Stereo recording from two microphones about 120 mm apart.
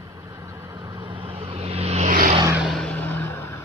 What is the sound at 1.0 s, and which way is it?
Vehicle, 50° right (ahead or behind).